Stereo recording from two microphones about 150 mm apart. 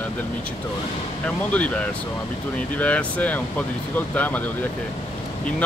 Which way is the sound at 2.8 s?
10° left (ahead or behind).